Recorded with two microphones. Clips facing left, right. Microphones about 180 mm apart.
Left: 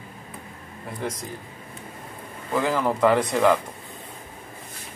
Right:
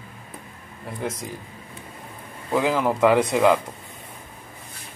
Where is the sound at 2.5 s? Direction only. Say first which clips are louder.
Right 2 dB; 10° right (ahead or behind).